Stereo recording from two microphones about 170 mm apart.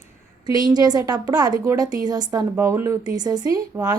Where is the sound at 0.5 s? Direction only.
20° right (ahead or behind).